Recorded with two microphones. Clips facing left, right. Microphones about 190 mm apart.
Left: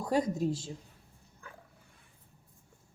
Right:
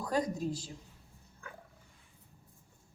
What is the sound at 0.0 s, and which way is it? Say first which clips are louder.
Speech: left 3 dB; 25° left (ahead or behind).